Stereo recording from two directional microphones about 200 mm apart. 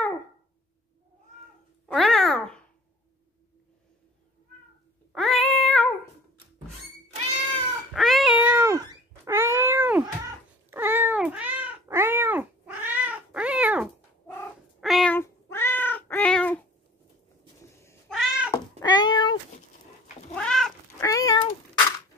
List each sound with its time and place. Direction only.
1.9 s cat: centre (ahead or behind)
5.1 s cat: centre (ahead or behind)
7.9 s cat: centre (ahead or behind)
15.1 s cat: 10° left (ahead or behind)
18.1 s cat: 5° right (ahead or behind)
18.5 s cat: 15° left (ahead or behind)
20.3 s cat: 5° left (ahead or behind)
21.0 s cat: 15° left (ahead or behind)